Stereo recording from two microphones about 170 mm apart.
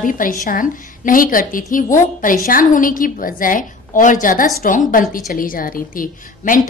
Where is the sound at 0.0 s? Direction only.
55° left (ahead or behind).